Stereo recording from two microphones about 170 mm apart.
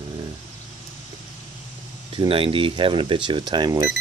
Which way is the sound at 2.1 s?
30° right (ahead or behind).